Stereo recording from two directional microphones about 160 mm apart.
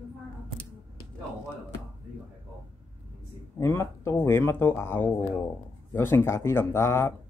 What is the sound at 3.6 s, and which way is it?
Speech, 15° left (ahead or behind).